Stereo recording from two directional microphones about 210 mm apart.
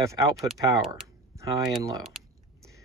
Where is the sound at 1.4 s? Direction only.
15° right (ahead or behind).